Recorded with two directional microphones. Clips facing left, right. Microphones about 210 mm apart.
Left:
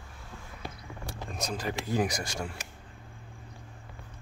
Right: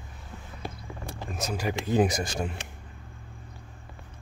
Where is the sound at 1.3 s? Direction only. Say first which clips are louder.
Right 3 dB; 5° right (ahead or behind).